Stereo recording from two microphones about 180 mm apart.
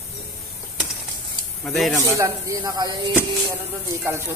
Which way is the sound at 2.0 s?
15° right (ahead or behind).